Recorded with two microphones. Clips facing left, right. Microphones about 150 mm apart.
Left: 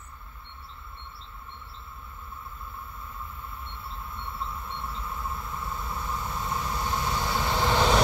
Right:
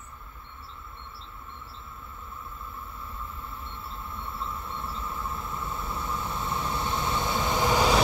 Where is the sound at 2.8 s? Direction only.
30° right (ahead or behind).